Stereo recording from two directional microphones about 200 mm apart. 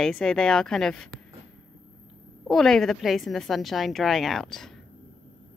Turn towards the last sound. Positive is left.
turn(degrees=0)  # may be behind; listen again after turning